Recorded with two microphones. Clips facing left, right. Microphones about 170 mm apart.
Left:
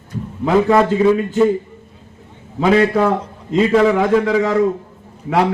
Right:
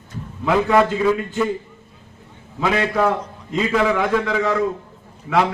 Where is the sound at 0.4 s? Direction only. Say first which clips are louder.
Left 3 dB; 30° left (ahead or behind).